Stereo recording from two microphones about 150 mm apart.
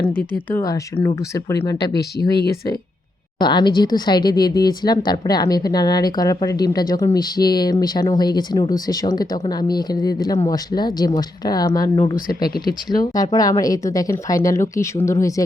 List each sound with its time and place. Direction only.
0.5 s speech: 25° left (ahead or behind)
3.3 s speech: 30° left (ahead or behind)